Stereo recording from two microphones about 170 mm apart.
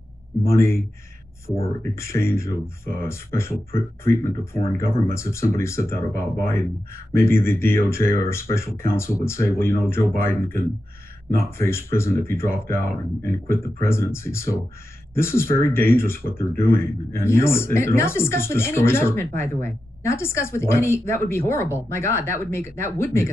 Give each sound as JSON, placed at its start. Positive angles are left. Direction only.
{"t": 0.5, "sound": "speech", "side_deg": 15}
{"t": 2.0, "sound": "speech", "side_deg": 15}